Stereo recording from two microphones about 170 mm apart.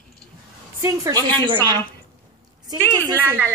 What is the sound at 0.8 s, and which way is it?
A woman's voice, 20° right (ahead or behind).